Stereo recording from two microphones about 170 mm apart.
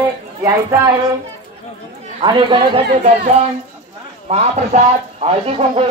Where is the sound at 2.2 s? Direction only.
30° right (ahead or behind).